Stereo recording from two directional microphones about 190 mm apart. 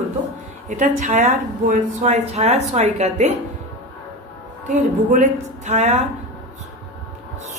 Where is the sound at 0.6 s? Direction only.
40° right (ahead or behind).